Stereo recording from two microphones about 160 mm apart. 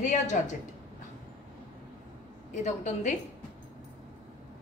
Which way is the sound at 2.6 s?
50° left (ahead or behind).